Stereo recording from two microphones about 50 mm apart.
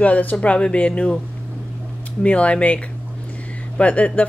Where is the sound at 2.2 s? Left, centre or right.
Left.